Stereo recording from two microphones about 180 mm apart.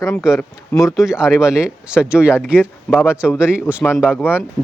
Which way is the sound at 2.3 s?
10° left (ahead or behind).